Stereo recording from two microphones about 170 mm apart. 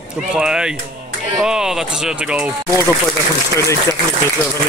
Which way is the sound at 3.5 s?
20° left (ahead or behind).